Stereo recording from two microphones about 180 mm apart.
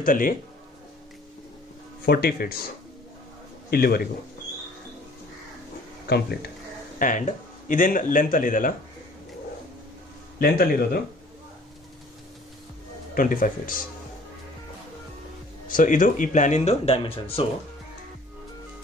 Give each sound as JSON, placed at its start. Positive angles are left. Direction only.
{"t": 0.0, "sound": "speech", "side_deg": 50}
{"t": 2.0, "sound": "speech", "side_deg": 60}
{"t": 3.7, "sound": "speech", "side_deg": 60}
{"t": 6.0, "sound": "speech", "side_deg": 65}
{"t": 7.0, "sound": "speech", "side_deg": 45}
{"t": 10.4, "sound": "speech", "side_deg": 60}
{"t": 13.1, "sound": "speech", "side_deg": 50}
{"t": 15.7, "sound": "speech", "side_deg": 45}